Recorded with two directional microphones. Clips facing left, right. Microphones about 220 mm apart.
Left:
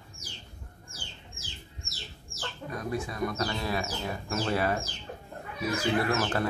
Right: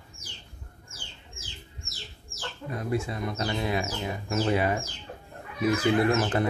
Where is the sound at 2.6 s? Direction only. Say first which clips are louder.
Right 4 dB; 25° right (ahead or behind).